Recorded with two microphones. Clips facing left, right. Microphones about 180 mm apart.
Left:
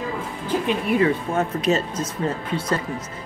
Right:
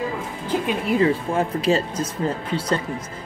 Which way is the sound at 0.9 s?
30° right (ahead or behind).